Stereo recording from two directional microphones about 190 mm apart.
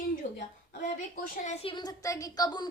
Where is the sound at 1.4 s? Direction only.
30° left (ahead or behind).